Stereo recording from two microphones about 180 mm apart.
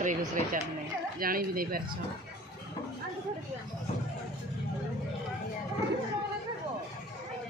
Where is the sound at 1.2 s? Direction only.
55° right (ahead or behind).